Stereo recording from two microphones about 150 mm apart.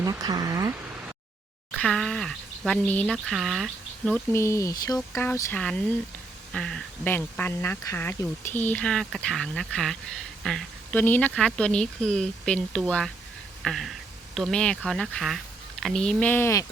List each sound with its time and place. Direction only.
0.0 s speech: 25° right (ahead or behind)
1.7 s speech: 5° left (ahead or behind)
4.1 s speech: 15° left (ahead or behind)
5.5 s speech: 5° left (ahead or behind)
10.9 s speech: 10° left (ahead or behind)
13.6 s a sound: centre (ahead or behind)
14.3 s speech: 5° left (ahead or behind)